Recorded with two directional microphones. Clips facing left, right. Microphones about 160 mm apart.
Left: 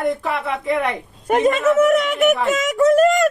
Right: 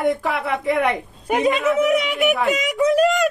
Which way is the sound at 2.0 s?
45° left (ahead or behind).